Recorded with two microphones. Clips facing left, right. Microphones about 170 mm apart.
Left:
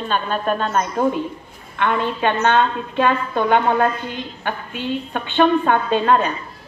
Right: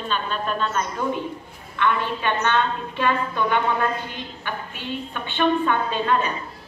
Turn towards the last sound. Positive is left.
turn(degrees=50)  # may be behind; listen again after turning